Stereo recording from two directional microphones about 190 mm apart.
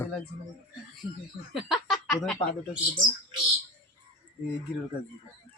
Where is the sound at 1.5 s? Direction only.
Centre (ahead or behind).